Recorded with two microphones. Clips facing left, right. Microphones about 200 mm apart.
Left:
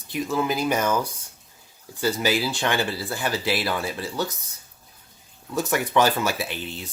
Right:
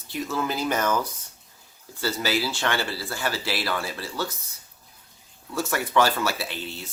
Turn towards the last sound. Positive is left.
turn(degrees=15)  # may be behind; listen again after turning